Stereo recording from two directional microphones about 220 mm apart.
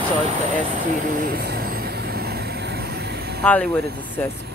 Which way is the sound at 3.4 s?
5° left (ahead or behind).